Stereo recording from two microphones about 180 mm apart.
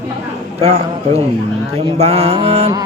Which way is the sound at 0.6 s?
35° right (ahead or behind).